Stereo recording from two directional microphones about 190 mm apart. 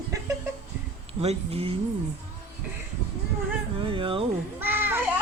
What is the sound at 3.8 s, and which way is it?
Speech, 30° right (ahead or behind).